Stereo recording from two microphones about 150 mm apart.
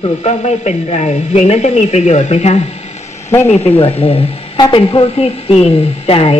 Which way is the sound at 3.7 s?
40° left (ahead or behind).